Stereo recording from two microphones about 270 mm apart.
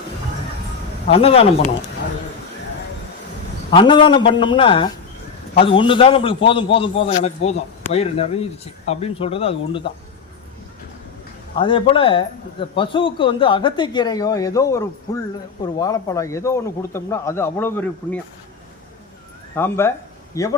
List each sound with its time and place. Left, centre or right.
1.0 s a man's voice: left
3.7 s a man's voice: centre
8.9 s a man's voice: left
11.5 s speech: centre
19.5 s a man's voice: centre